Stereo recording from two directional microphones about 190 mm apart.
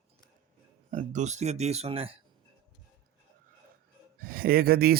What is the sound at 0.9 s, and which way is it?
Speech, 40° right (ahead or behind).